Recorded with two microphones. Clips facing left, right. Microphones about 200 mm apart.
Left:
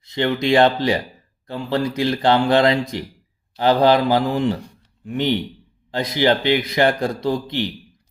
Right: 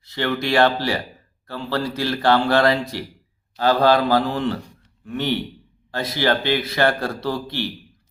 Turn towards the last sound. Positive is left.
turn(degrees=20)  # may be behind; listen again after turning